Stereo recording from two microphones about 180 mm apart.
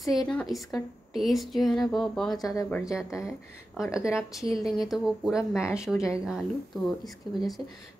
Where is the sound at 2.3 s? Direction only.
20° left (ahead or behind).